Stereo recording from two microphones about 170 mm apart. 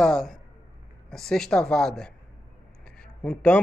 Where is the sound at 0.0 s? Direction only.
Centre (ahead or behind).